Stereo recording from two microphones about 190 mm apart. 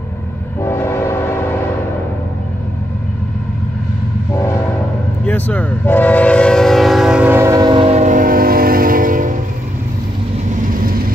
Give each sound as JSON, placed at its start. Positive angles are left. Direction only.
{"t": 0.6, "sound": "train", "side_deg": 15}
{"t": 4.3, "sound": "train horn", "side_deg": 15}
{"t": 10.6, "sound": "vehicle", "side_deg": -50}